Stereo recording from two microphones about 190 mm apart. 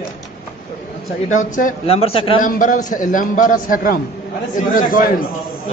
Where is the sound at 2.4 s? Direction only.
45° left (ahead or behind).